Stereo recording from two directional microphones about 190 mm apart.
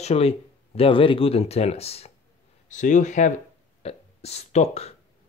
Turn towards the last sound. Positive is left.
turn(degrees=35)  # may be behind; listen again after turning